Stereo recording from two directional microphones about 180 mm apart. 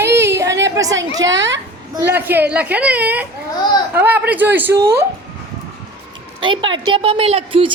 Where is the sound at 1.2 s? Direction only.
90° right.